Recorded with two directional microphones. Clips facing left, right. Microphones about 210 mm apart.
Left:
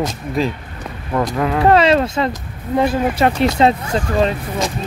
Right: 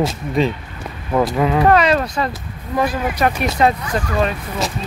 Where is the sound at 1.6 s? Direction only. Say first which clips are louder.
Left 4 dB; 25° left (ahead or behind).